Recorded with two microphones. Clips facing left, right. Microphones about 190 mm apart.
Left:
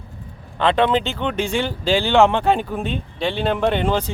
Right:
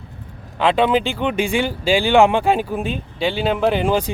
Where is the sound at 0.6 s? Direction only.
10° right (ahead or behind).